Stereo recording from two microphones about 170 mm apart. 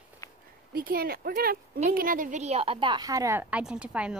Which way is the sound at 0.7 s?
60° right (ahead or behind).